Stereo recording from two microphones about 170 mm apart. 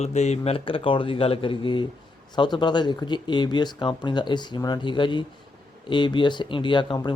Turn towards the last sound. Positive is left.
turn(degrees=30)  # may be behind; listen again after turning